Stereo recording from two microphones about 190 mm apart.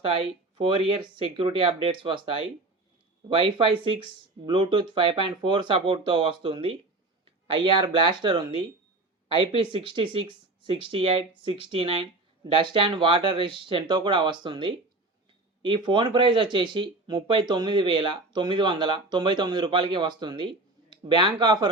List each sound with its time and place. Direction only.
0.0 s speech: 25° right (ahead or behind)